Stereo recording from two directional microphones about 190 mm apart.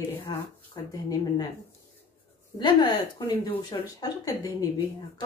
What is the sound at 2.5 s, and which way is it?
Speech, 25° left (ahead or behind).